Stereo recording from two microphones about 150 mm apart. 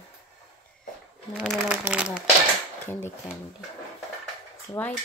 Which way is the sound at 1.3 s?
Centre (ahead or behind).